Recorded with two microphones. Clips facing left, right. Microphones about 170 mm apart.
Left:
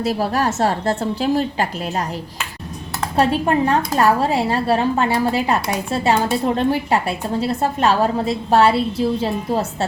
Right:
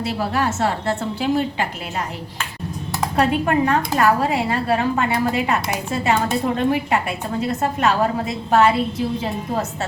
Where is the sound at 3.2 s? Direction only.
30° left (ahead or behind).